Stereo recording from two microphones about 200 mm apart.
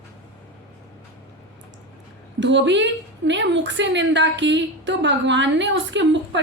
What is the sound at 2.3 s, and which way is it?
A woman's voice, 65° right (ahead or behind).